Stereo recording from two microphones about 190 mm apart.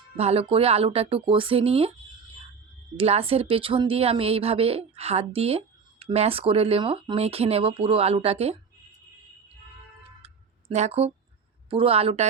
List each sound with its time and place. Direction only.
0.2 s speech: 30° right (ahead or behind)
3.0 s speech: 30° right (ahead or behind)
10.2 s a sound: 35° right (ahead or behind)
11.7 s speech: 30° right (ahead or behind)